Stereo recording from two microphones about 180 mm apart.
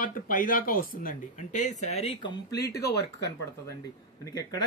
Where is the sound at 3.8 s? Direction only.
20° left (ahead or behind).